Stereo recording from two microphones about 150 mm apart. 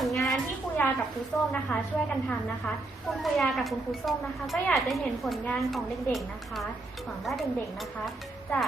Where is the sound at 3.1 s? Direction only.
Centre (ahead or behind).